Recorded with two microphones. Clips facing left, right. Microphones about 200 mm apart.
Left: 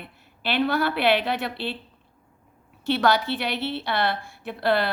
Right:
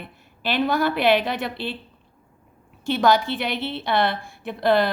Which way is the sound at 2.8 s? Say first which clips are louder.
Right 2 dB; 50° right (ahead or behind).